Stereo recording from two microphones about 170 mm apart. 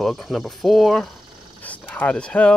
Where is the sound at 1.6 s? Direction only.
10° left (ahead or behind).